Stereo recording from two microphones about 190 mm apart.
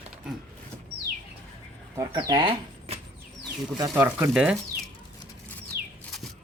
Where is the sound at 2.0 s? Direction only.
20° right (ahead or behind).